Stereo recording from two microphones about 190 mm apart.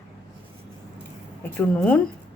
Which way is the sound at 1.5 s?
10° left (ahead or behind).